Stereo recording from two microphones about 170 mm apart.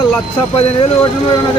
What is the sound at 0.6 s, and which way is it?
Speech, 30° left (ahead or behind).